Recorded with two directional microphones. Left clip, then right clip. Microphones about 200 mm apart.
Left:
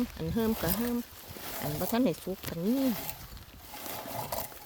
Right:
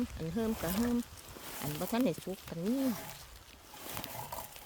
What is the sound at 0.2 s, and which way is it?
Speech, 20° left (ahead or behind).